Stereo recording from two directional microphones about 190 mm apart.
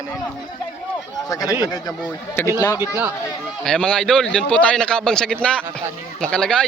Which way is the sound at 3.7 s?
5° left (ahead or behind).